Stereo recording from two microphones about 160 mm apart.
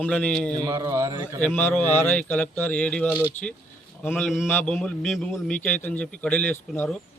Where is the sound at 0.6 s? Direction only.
25° right (ahead or behind).